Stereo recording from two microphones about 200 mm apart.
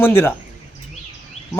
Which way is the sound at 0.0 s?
10° left (ahead or behind).